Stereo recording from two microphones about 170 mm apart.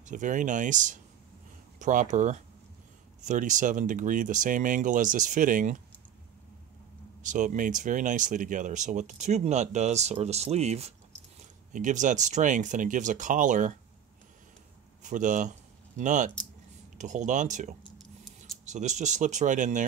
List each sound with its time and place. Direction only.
0.0 s speech: 50° right (ahead or behind)
7.2 s speech: 50° right (ahead or behind)
15.0 s speech: 50° right (ahead or behind)